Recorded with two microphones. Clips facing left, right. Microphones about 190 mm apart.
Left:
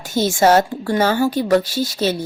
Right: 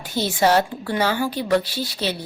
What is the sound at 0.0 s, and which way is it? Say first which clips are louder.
Speech: left 4 dB; 45° left (ahead or behind).